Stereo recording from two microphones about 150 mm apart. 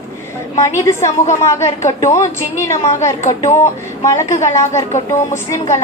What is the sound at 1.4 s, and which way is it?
Speech, 20° left (ahead or behind).